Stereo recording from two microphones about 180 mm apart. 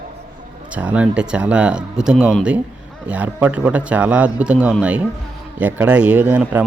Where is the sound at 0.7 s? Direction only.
10° right (ahead or behind).